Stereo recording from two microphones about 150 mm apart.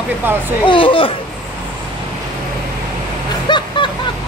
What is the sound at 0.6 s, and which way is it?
Speech, 35° left (ahead or behind).